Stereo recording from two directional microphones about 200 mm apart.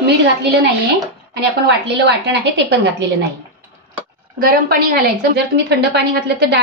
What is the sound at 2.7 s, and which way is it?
Speech, 55° right (ahead or behind).